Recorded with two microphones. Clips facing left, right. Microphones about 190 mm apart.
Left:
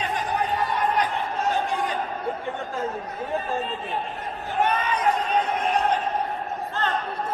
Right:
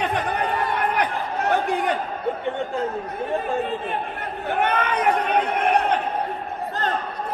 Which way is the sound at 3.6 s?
60° right (ahead or behind).